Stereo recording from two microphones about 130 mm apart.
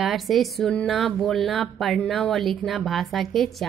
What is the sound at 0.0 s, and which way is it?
Speech, centre (ahead or behind).